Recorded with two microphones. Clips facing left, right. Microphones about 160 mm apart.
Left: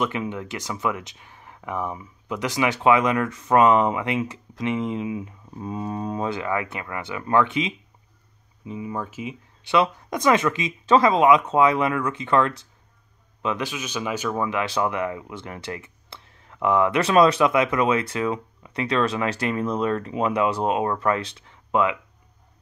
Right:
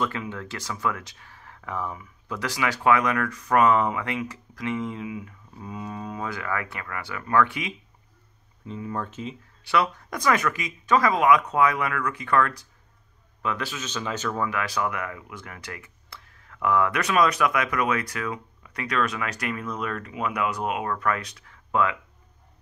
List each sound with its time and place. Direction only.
0.0 s speech: 20° left (ahead or behind)
8.6 s speech: 10° left (ahead or behind)